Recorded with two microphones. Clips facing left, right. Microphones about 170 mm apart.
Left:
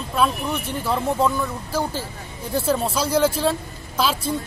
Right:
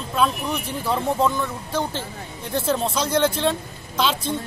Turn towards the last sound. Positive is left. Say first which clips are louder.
# even
turn(degrees=5)  # may be behind; listen again after turning